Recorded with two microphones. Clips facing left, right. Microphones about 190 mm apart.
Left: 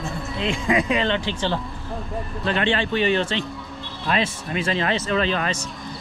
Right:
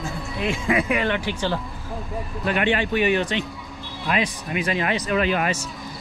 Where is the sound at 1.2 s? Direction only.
10° right (ahead or behind).